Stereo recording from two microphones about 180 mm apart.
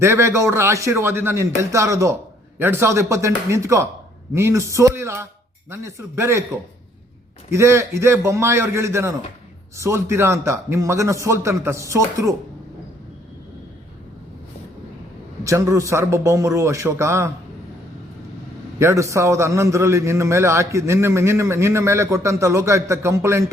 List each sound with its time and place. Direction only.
0.0 s a man's voice: 15° right (ahead or behind)
7.5 s a man's voice: 15° right (ahead or behind)
15.4 s a man's voice: 15° right (ahead or behind)
18.8 s a man's voice: 15° right (ahead or behind)